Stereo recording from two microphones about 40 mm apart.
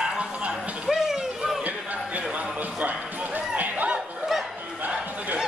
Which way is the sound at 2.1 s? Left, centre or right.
Right.